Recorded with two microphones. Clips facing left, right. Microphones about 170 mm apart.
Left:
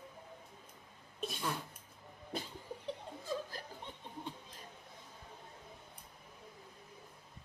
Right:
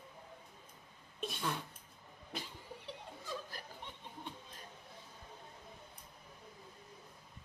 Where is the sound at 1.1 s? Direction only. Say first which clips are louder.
Left 1 dB; 40° left (ahead or behind).